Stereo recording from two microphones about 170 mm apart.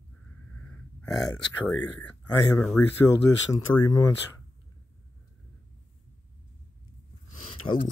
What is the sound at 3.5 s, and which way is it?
Speech, 20° left (ahead or behind).